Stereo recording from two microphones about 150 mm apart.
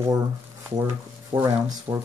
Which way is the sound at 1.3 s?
35° right (ahead or behind).